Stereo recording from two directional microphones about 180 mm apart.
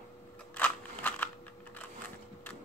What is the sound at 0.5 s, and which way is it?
Scissors, 10° left (ahead or behind).